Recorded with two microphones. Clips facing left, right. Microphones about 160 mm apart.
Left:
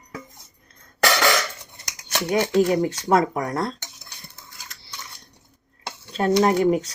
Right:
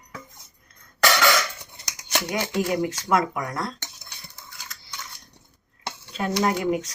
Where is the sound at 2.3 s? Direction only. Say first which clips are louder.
Left 7 dB; 25° left (ahead or behind).